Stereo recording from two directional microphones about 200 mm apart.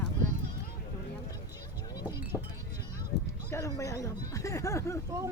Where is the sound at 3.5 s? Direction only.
15° left (ahead or behind).